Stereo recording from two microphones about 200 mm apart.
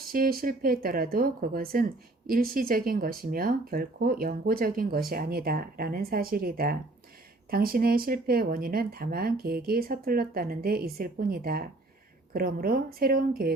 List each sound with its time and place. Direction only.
0.1 s speech: 45° right (ahead or behind)